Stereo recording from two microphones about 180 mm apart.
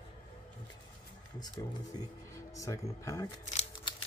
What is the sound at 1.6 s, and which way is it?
Speech, 15° left (ahead or behind).